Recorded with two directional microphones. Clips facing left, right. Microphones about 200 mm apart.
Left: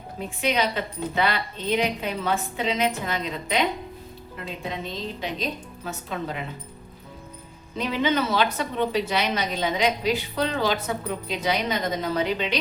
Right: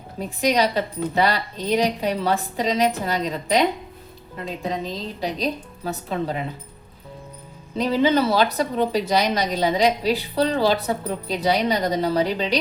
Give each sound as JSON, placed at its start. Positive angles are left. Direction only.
{"t": 0.2, "sound": "a woman's voice", "side_deg": -40}
{"t": 7.8, "sound": "a woman's voice", "side_deg": -35}